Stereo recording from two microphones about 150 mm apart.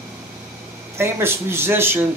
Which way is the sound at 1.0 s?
15° right (ahead or behind).